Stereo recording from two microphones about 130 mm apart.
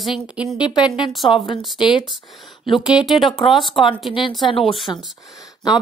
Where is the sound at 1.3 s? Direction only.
40° left (ahead or behind).